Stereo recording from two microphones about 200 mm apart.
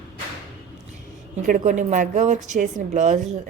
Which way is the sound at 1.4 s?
40° right (ahead or behind).